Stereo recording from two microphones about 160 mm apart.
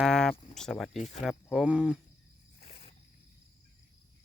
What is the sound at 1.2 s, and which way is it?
Speech, 5° left (ahead or behind).